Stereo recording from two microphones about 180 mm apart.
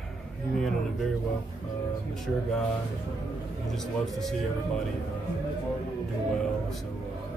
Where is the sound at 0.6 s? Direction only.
Centre (ahead or behind).